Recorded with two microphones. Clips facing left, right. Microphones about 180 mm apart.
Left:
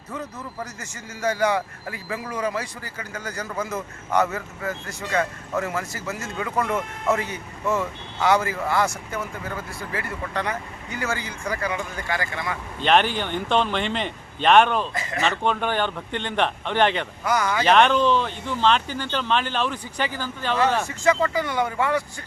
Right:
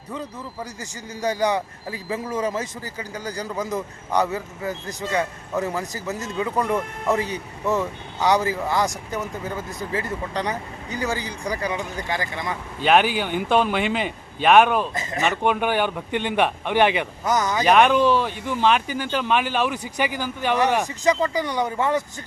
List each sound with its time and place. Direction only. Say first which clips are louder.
0.1 s speech: right 1 dB; 15° right (ahead or behind)
12.8 s speech: right 2 dB; 5° right (ahead or behind)
14.9 s speech: right 1 dB; 20° right (ahead or behind)
17.7 s speech: right 2 dB; 10° right (ahead or behind)